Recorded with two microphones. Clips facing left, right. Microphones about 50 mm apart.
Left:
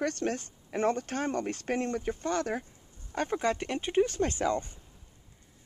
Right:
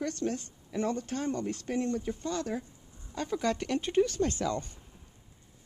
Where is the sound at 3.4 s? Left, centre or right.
Left.